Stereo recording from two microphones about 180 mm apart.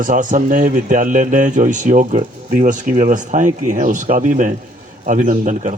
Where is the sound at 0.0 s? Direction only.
45° right (ahead or behind).